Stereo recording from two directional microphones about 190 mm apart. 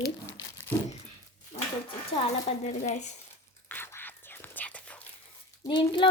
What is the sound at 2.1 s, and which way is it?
Speech, 35° left (ahead or behind).